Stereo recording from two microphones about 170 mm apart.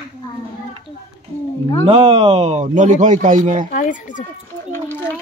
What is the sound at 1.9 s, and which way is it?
Speech, 35° right (ahead or behind).